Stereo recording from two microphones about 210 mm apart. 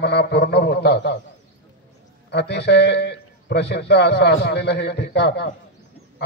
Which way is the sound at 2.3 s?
55° left (ahead or behind).